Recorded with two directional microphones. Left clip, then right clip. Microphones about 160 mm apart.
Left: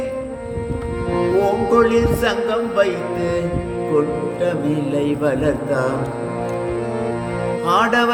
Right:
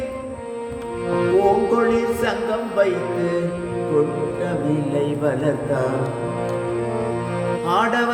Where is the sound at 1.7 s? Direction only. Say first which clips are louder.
Left 4 dB; 35° left (ahead or behind).